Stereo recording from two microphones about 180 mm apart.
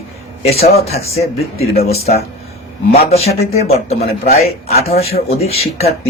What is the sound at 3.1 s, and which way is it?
Speech, 35° left (ahead or behind).